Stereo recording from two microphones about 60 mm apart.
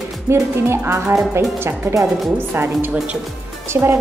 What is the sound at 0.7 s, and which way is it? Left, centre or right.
A woman's voice, right.